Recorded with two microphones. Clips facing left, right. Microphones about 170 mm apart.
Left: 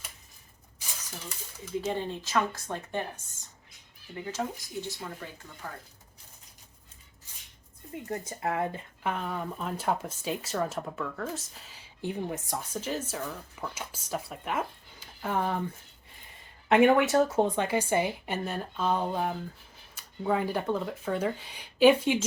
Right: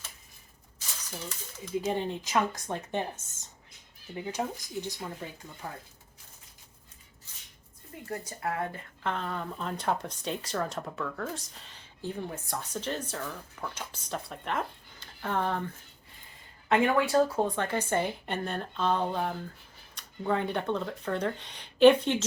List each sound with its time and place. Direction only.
1.8 s speech: 15° right (ahead or behind)
8.0 s speech: 20° left (ahead or behind)
16.6 s speech: 20° left (ahead or behind)